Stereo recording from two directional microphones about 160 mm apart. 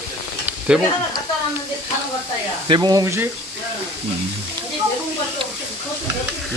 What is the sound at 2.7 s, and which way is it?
Speech, 25° right (ahead or behind).